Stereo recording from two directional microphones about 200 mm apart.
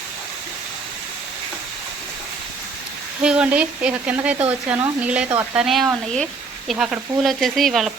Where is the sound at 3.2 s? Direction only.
5° right (ahead or behind).